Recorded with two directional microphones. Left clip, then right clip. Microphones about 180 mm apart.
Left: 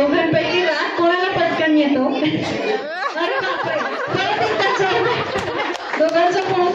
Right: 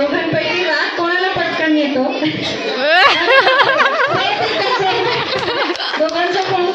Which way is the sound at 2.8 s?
25° right (ahead or behind).